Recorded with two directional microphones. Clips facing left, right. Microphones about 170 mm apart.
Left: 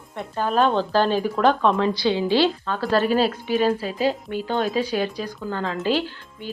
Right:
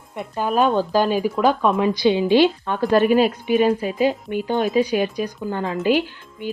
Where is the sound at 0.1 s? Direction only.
10° right (ahead or behind).